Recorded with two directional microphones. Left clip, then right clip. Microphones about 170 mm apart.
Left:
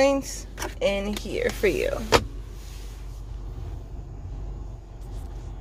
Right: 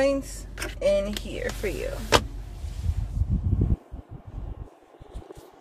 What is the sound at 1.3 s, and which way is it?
Speech, 40° left (ahead or behind).